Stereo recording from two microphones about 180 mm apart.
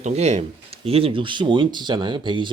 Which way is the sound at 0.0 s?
40° right (ahead or behind).